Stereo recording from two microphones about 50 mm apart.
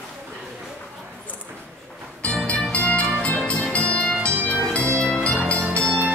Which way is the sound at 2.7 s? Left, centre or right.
Left.